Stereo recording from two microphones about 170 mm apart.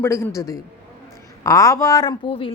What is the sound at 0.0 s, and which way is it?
A woman's voice, 15° left (ahead or behind).